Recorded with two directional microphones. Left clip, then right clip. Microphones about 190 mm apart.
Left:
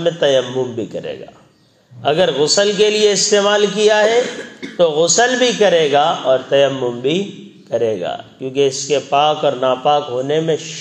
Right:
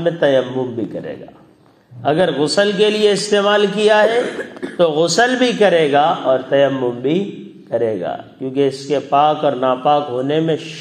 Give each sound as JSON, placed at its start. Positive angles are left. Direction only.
{"t": 0.0, "sound": "a man's voice", "side_deg": 25}